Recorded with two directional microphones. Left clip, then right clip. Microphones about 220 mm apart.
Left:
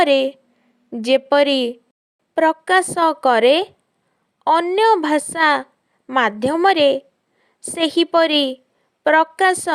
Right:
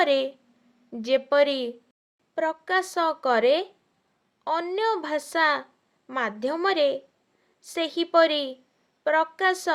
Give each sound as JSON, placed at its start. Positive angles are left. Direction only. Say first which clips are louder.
{"t": 0.0, "sound": "speech", "louder": "left 7 dB", "side_deg": 35}